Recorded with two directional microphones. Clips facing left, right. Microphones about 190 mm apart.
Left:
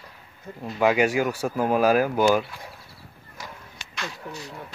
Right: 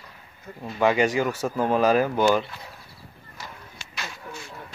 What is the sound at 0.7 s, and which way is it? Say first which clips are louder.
Speech: even; 5° left (ahead or behind).